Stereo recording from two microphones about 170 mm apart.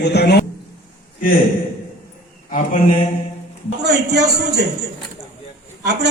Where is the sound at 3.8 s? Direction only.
80° right.